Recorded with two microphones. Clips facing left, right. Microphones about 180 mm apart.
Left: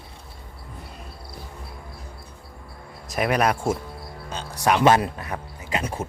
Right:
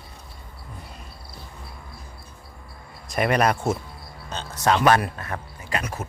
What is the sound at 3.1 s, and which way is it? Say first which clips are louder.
Speech: right 1 dB; centre (ahead or behind).